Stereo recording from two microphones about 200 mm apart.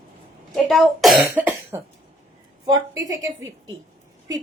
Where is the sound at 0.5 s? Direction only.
Centre (ahead or behind).